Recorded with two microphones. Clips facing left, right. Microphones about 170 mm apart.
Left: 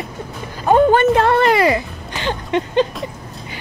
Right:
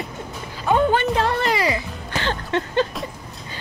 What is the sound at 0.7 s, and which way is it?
Speech, 50° left (ahead or behind).